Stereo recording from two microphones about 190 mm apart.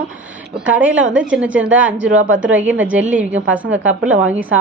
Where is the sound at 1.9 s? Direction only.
75° right (ahead or behind).